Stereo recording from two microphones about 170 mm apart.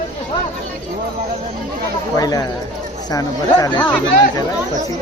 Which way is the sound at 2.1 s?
20° left (ahead or behind).